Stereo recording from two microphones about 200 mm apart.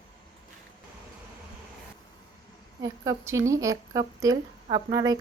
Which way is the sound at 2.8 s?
15° right (ahead or behind).